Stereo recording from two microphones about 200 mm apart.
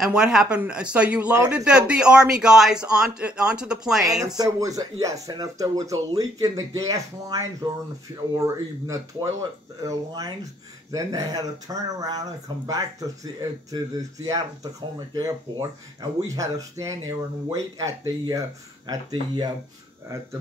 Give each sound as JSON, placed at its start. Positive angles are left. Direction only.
{"t": 0.0, "sound": "a man's voice", "side_deg": -5}
{"t": 4.4, "sound": "speech", "side_deg": -15}